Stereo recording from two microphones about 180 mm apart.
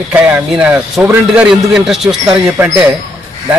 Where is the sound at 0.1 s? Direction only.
5° right (ahead or behind).